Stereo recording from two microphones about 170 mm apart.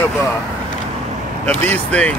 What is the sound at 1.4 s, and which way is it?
Speech, 10° left (ahead or behind).